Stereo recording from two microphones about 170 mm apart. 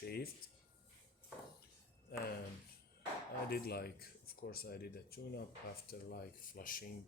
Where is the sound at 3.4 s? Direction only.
65° left (ahead or behind).